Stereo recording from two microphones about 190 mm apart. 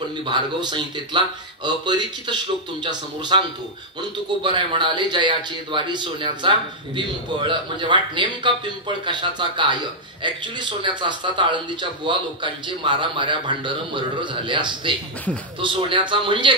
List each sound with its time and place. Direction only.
0.2 s a man's voice: 25° right (ahead or behind)